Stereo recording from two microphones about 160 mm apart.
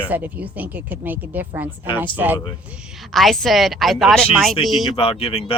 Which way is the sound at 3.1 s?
Centre (ahead or behind).